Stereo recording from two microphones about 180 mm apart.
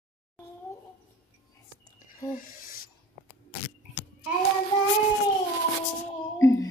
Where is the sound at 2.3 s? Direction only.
50° left (ahead or behind).